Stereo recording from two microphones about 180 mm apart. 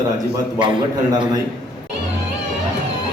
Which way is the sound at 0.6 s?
25° right (ahead or behind).